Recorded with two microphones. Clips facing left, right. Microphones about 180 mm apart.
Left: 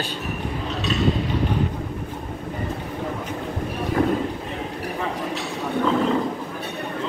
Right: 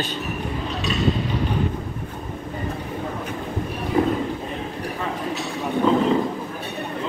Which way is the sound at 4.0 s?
15° right (ahead or behind).